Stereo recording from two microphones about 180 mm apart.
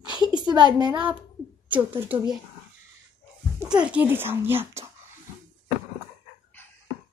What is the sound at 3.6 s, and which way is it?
A woman's voice, 5° right (ahead or behind).